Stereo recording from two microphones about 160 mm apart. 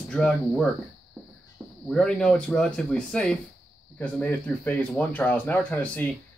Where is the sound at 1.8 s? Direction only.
5° left (ahead or behind).